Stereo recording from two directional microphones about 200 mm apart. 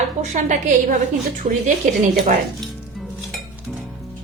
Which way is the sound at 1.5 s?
35° right (ahead or behind).